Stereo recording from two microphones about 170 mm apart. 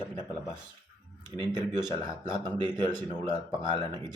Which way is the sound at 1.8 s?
25° right (ahead or behind).